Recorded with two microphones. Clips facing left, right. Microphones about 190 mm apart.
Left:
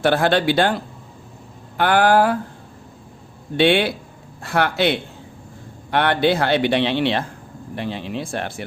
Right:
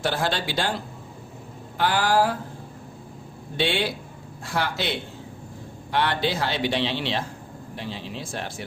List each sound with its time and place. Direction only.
0.0 s a man's voice: 60° left (ahead or behind)
1.8 s a man's voice: 60° left (ahead or behind)
3.6 s a man's voice: 60° left (ahead or behind)